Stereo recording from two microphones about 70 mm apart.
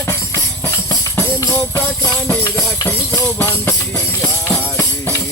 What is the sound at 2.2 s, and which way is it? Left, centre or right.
Music, left.